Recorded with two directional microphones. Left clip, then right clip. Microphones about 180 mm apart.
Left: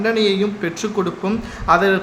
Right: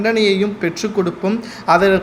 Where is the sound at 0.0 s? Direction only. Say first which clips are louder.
Right 2 dB; 10° right (ahead or behind).